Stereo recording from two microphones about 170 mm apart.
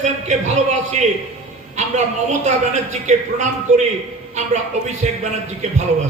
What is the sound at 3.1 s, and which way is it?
A man's voice, 45° right (ahead or behind).